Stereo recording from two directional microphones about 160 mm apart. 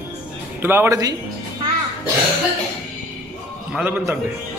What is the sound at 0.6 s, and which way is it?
Speech, 15° right (ahead or behind).